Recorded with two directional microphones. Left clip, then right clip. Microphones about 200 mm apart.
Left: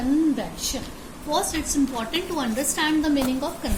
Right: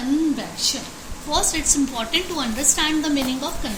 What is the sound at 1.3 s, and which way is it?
A woman's voice, 35° left (ahead or behind).